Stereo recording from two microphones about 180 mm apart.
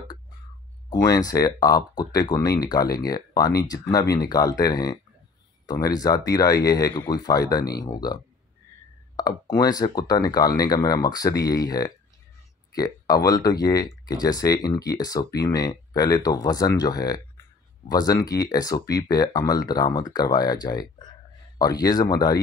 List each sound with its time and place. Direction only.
0.8 s speech: 20° left (ahead or behind)